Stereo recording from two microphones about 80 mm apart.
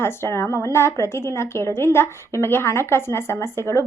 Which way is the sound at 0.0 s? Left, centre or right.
Left.